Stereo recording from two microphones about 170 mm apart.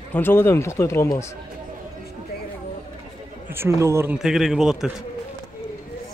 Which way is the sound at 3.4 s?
15° right (ahead or behind).